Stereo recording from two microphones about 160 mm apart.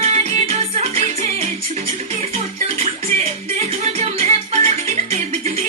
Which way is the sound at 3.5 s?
40° right (ahead or behind).